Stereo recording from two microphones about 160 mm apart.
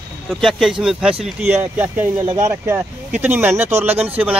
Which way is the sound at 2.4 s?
20° right (ahead or behind).